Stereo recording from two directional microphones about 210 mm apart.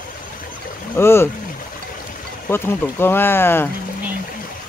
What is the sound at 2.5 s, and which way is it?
Speech, 10° left (ahead or behind).